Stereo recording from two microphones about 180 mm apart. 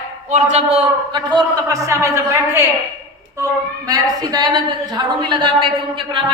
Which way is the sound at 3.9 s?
20° right (ahead or behind).